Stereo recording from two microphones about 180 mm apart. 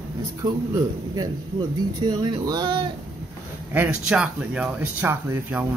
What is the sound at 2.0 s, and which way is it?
Speech, 25° right (ahead or behind).